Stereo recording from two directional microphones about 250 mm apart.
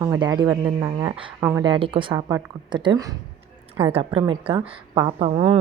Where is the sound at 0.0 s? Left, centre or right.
Centre.